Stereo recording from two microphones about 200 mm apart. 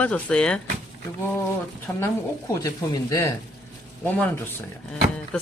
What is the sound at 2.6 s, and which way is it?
Speech, 15° left (ahead or behind).